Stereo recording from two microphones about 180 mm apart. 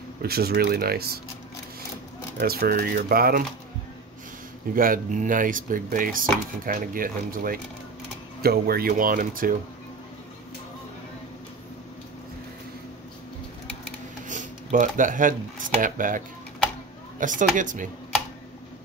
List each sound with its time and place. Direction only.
0.2 s speech: 60° right (ahead or behind)
2.3 s speech: 60° right (ahead or behind)
4.7 s speech: 50° right (ahead or behind)
14.2 s speech: 45° right (ahead or behind)
17.2 s speech: 45° right (ahead or behind)